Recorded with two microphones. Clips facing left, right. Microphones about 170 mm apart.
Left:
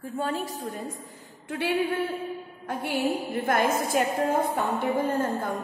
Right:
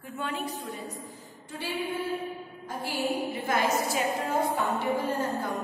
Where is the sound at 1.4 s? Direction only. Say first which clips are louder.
Left 7 dB; 65° left (ahead or behind).